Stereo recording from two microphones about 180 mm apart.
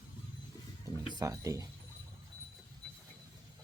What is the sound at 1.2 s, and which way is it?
Speech, 20° right (ahead or behind).